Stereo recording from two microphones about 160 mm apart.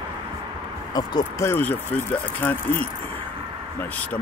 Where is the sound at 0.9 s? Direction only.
20° left (ahead or behind).